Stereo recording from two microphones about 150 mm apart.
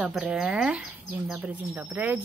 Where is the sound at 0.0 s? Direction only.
5° right (ahead or behind).